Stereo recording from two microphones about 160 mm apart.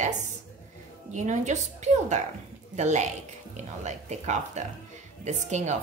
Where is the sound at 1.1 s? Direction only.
45° right (ahead or behind).